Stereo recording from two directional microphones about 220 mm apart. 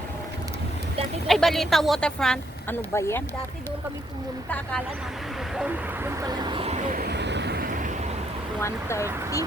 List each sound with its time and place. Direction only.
1.3 s speech: centre (ahead or behind)
5.5 s vehicle: 10° right (ahead or behind); by 7.9 s 40° right (ahead or behind)
8.6 s speech: 10° left (ahead or behind)